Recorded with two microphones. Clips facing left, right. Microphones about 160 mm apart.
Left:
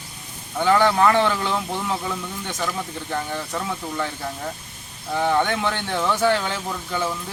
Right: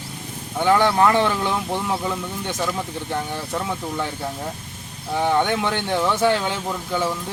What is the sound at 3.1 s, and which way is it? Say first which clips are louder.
Speech: right 1 dB; 10° right (ahead or behind).